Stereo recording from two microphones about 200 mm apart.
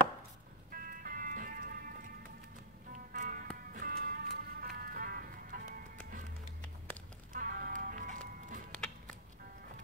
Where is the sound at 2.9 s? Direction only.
40° right (ahead or behind).